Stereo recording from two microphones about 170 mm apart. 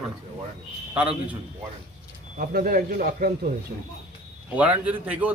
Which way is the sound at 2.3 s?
55° right (ahead or behind).